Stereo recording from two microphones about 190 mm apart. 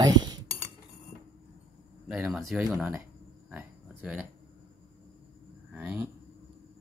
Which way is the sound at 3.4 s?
5° right (ahead or behind).